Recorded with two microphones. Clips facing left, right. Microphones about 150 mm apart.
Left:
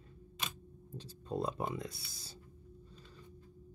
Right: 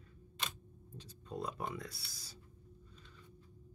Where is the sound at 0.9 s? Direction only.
30° left (ahead or behind).